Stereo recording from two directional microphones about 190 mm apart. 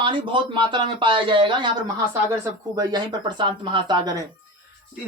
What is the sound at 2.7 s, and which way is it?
Speech, 25° right (ahead or behind).